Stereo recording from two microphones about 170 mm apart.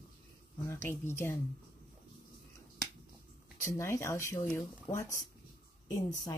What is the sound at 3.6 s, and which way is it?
Speech, 15° left (ahead or behind).